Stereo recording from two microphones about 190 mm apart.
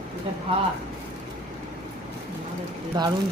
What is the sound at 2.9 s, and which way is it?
Speech, 25° right (ahead or behind).